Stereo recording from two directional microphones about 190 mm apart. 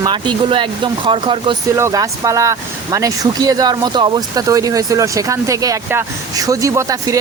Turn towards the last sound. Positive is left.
turn(degrees=-15)  # may be behind; listen again after turning